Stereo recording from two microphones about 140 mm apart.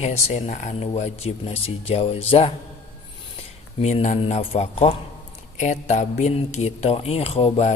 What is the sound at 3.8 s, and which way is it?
Speech, 55° left (ahead or behind).